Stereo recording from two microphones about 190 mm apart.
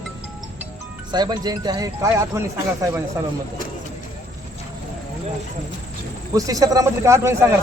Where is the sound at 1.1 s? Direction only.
20° right (ahead or behind).